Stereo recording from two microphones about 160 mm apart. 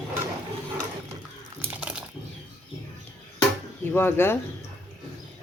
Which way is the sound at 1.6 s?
5° right (ahead or behind).